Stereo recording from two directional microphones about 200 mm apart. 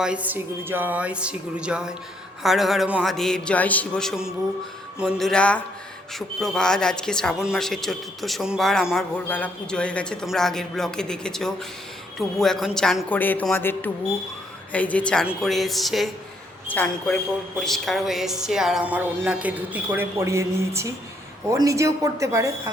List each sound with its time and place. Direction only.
0.0 s a man's voice: 5° right (ahead or behind)